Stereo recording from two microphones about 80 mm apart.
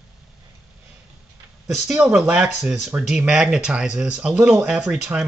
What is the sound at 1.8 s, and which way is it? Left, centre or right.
Speech, centre.